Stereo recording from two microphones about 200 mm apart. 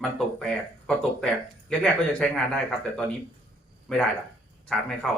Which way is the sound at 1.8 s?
5° left (ahead or behind).